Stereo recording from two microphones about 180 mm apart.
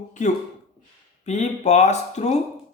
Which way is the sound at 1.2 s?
40° left (ahead or behind).